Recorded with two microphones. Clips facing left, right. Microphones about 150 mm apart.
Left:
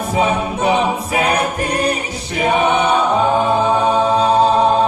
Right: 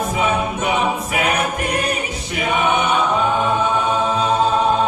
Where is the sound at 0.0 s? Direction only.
30° left (ahead or behind).